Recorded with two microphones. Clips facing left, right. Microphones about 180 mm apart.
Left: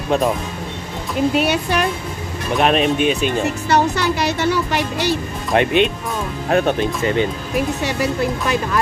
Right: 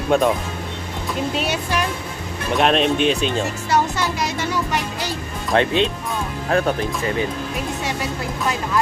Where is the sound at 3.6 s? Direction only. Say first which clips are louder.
Left 3 dB; 70° left (ahead or behind).